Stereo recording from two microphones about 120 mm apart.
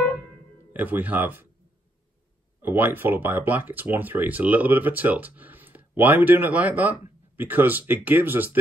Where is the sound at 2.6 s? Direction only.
15° right (ahead or behind).